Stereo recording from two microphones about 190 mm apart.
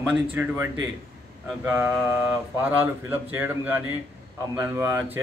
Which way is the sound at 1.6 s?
10° right (ahead or behind).